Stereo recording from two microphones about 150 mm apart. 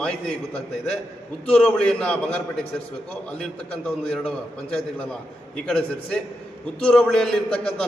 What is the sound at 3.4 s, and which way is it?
A man's voice, 10° left (ahead or behind).